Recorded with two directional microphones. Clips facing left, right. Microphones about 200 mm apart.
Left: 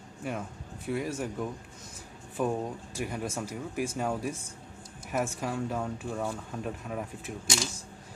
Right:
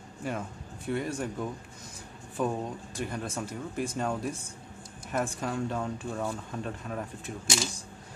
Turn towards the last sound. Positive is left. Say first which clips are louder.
# right 1 dB
turn(degrees=5)  # may be behind; listen again after turning